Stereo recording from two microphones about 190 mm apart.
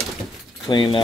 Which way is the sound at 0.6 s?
25° left (ahead or behind).